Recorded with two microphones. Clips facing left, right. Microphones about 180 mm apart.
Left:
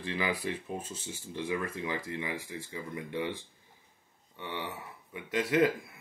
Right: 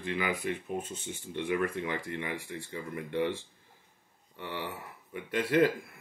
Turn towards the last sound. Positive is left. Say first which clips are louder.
# right 1 dB
turn(degrees=25)  # may be behind; listen again after turning